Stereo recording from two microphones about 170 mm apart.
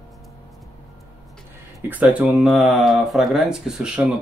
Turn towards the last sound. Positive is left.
turn(degrees=-5)  # may be behind; listen again after turning